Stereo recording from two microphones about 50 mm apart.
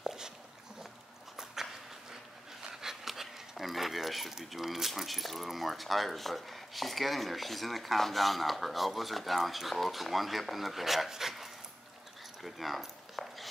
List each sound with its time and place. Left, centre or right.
0.0 s dog: centre
1.3 s horse: centre
2.7 s speech: centre
12.4 s a sound: centre